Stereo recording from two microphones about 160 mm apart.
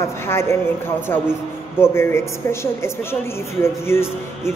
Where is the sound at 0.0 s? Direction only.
15° left (ahead or behind).